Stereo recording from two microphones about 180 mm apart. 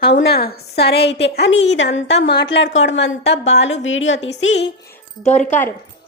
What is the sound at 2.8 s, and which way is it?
A woman's voice, 90° left.